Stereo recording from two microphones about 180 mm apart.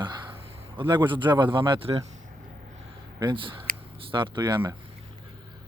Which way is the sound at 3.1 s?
25° right (ahead or behind).